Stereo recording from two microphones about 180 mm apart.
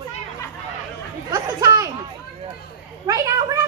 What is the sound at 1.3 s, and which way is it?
Chatter, 20° right (ahead or behind).